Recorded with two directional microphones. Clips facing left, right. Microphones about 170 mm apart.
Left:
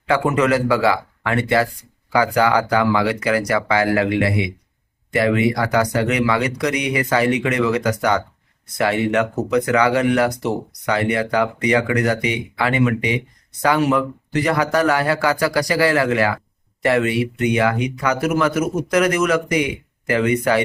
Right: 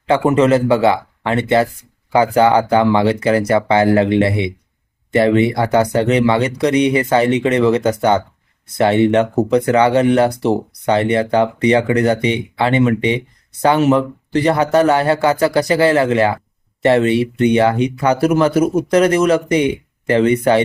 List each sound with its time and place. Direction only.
0.1 s speech: 25° right (ahead or behind)